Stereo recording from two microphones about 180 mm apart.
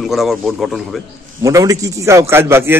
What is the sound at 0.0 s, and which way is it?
Speech, centre (ahead or behind).